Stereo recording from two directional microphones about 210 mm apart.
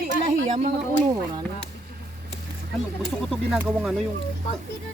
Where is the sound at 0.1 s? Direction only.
35° right (ahead or behind).